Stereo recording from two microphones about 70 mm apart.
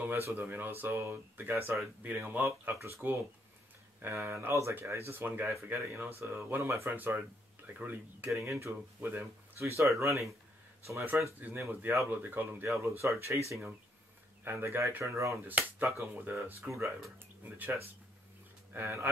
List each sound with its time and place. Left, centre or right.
0.0 s speech: right
2.6 s speech: right
5.5 s speech: right
8.3 s speech: right
12.6 s speech: right
14.4 s speech: right
16.0 s speech: right
18.7 s speech: right